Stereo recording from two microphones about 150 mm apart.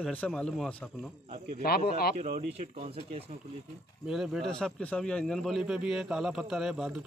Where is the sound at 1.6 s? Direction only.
90° left.